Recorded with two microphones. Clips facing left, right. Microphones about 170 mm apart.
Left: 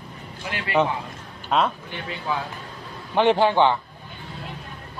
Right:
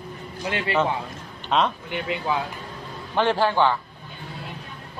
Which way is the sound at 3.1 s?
20° left (ahead or behind).